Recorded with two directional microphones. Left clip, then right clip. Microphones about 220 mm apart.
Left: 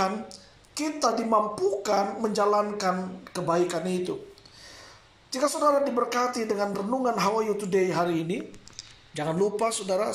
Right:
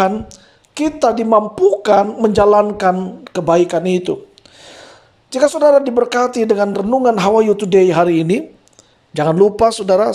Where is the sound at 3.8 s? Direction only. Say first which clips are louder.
Right 13 dB; 85° right.